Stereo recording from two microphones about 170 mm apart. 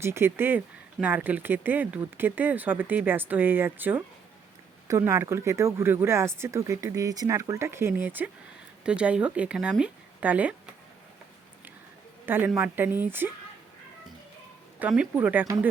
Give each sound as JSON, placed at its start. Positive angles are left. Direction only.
{"t": 0.0, "sound": "speech", "side_deg": -15}
{"t": 12.2, "sound": "a woman's voice", "side_deg": -10}
{"t": 14.8, "sound": "speech", "side_deg": -10}